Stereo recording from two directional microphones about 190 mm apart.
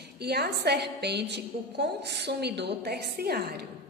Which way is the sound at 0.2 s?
60° right (ahead or behind).